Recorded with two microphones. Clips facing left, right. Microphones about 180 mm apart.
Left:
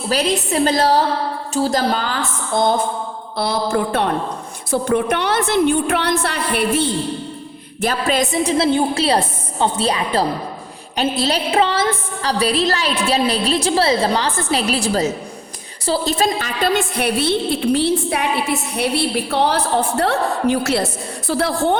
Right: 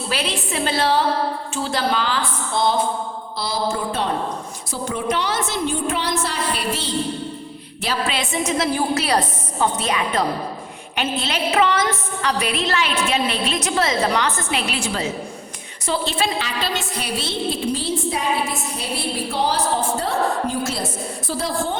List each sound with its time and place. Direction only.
0.1 s a woman's voice: 40° left (ahead or behind)
3.3 s a woman's voice: 60° left (ahead or behind)
7.8 s a woman's voice: 45° left (ahead or behind); by 21.8 s 65° left (ahead or behind)